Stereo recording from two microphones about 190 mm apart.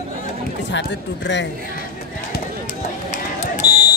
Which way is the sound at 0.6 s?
70° left (ahead or behind).